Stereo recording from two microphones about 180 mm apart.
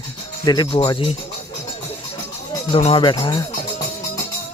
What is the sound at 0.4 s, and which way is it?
Speech, 25° left (ahead or behind).